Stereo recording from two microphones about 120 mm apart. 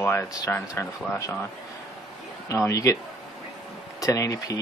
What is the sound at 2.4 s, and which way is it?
Speech, 25° left (ahead or behind).